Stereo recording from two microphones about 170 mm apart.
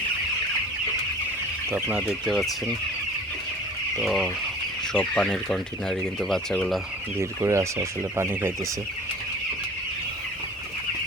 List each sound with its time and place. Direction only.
1.7 s speech: 5° right (ahead or behind)
4.0 s speech: centre (ahead or behind)
7.2 s speech: 15° right (ahead or behind)